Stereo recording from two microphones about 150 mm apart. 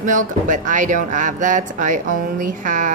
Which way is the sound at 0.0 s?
60° right (ahead or behind).